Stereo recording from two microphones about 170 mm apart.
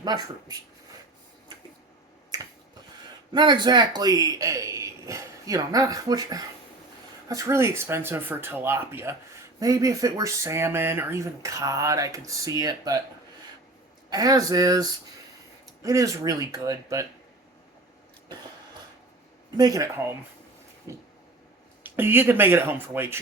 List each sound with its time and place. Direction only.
0.0 s speech: 25° right (ahead or behind)
3.3 s speech: 25° right (ahead or behind)
14.1 s speech: 20° right (ahead or behind)
19.5 s speech: 20° right (ahead or behind)
20.9 s vehicle: 15° right (ahead or behind)
21.8 s speech: 10° right (ahead or behind)